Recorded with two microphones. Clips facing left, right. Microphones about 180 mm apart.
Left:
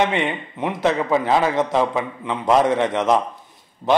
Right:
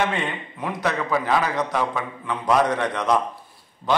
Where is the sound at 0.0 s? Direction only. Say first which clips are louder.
Left 4 dB; 20° left (ahead or behind).